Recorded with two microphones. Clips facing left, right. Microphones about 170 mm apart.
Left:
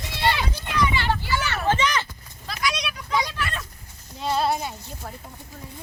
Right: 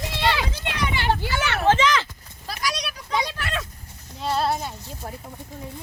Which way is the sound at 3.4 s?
75° right (ahead or behind).